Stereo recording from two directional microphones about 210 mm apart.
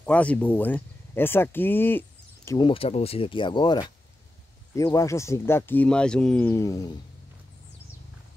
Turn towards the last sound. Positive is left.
turn(degrees=15)  # may be behind; listen again after turning